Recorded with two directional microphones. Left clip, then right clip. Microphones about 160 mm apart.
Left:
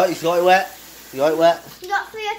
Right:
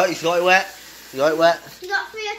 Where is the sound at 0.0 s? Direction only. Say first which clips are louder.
Left 1 dB; 15° left (ahead or behind).